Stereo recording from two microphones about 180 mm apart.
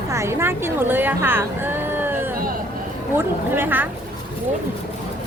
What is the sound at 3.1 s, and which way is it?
Music, 10° right (ahead or behind).